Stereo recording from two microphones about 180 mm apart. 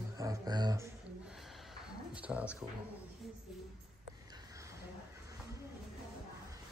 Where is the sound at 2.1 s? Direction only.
5° right (ahead or behind).